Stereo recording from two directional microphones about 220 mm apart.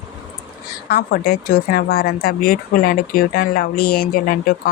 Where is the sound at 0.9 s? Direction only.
45° left (ahead or behind).